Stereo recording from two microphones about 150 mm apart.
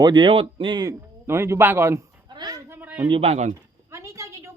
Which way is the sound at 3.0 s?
40° right (ahead or behind).